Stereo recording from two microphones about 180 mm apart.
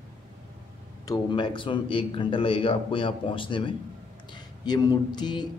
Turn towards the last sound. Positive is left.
turn(degrees=25)  # may be behind; listen again after turning